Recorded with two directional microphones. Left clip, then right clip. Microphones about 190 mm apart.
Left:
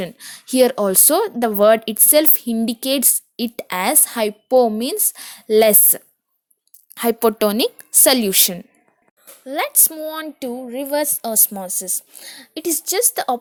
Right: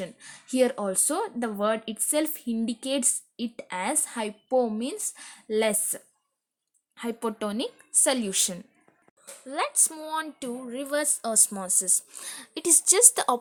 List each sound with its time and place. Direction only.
0.0 s speech: 40° left (ahead or behind); by 13.3 s 10° left (ahead or behind)